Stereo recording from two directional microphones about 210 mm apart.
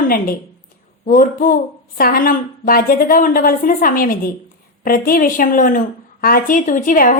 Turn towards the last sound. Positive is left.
turn(degrees=40)  # may be behind; listen again after turning